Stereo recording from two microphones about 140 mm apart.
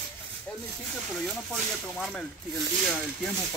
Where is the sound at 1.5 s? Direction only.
5° left (ahead or behind).